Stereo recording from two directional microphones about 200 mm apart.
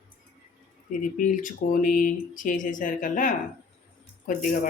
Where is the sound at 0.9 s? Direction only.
40° left (ahead or behind).